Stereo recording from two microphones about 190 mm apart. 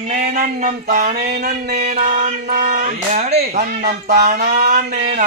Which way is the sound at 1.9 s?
40° right (ahead or behind).